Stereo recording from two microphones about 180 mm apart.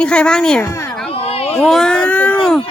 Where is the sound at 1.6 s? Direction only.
5° left (ahead or behind).